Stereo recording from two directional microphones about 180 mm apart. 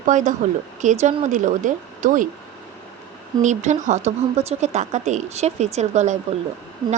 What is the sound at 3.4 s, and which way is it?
Speech, 40° right (ahead or behind).